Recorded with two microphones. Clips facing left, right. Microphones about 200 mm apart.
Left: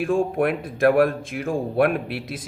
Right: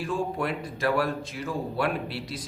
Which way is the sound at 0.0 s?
50° left (ahead or behind).